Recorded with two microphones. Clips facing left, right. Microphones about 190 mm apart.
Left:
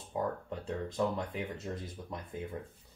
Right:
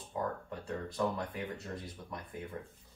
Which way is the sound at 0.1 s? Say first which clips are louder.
Left 2 dB; 20° left (ahead or behind).